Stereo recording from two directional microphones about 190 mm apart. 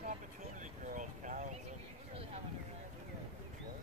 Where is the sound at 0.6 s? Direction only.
40° right (ahead or behind).